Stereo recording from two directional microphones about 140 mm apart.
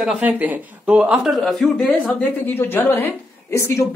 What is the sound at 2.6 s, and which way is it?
Speech, 15° left (ahead or behind).